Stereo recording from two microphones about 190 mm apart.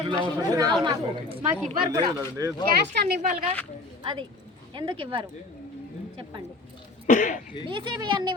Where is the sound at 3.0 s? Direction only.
50° right (ahead or behind).